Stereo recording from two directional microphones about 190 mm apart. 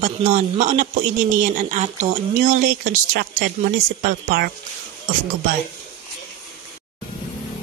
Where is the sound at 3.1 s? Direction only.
60° right (ahead or behind).